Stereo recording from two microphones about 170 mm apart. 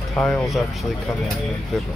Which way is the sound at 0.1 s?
5° left (ahead or behind).